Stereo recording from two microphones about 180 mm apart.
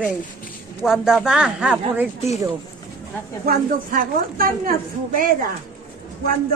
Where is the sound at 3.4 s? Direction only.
50° right (ahead or behind).